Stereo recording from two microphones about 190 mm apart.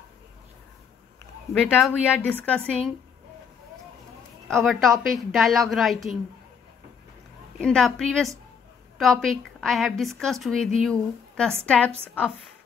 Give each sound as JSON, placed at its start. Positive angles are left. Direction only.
{"t": 1.5, "sound": "a woman's voice", "side_deg": 5}
{"t": 4.5, "sound": "a woman's voice", "side_deg": 0}
{"t": 7.6, "sound": "a woman's voice", "side_deg": 5}